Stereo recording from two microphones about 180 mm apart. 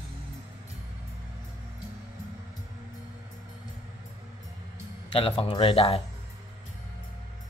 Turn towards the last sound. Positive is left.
turn(degrees=30)  # may be behind; listen again after turning